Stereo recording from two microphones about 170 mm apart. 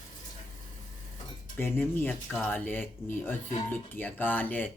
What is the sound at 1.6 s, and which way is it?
Speech, 10° left (ahead or behind).